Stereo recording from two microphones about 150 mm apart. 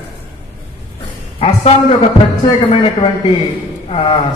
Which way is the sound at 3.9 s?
30° left (ahead or behind).